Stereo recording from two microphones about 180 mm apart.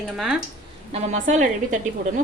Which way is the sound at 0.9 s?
40° right (ahead or behind).